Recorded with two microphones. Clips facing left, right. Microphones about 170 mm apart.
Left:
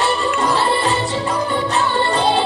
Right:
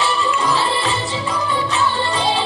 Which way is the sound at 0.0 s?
50° left (ahead or behind).